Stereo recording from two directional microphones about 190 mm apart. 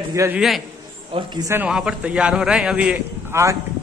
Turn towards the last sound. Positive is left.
turn(degrees=-10)  # may be behind; listen again after turning